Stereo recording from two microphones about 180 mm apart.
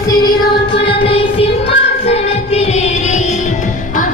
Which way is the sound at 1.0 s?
30° left (ahead or behind).